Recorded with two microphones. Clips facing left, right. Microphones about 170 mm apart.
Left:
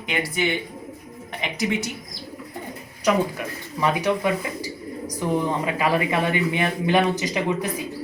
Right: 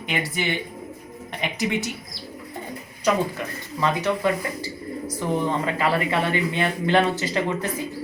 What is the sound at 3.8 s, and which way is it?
Speech, 15° left (ahead or behind).